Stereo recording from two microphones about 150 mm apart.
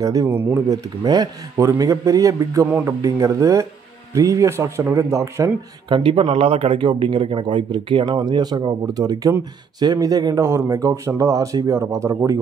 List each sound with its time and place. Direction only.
0.0 s speech: 25° right (ahead or behind)
0.3 s speech: 10° right (ahead or behind)
1.0 s speech: 25° right (ahead or behind)
5.9 s speech: 35° right (ahead or behind)